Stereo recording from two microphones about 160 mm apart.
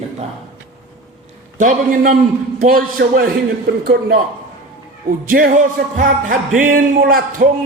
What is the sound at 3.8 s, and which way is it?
Speech, 70° right (ahead or behind).